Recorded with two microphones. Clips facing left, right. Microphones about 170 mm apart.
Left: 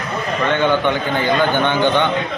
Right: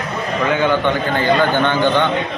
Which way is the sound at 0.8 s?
15° left (ahead or behind).